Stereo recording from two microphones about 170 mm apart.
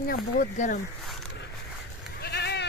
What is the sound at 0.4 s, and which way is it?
Speech, 45° left (ahead or behind).